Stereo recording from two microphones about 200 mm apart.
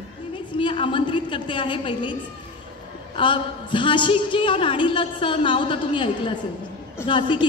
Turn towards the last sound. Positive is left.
turn(degrees=25)  # may be behind; listen again after turning